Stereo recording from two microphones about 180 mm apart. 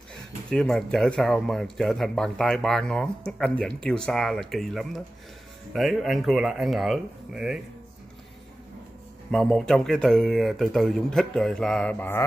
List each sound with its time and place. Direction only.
0.5 s speech: 5° left (ahead or behind)
9.3 s speech: centre (ahead or behind)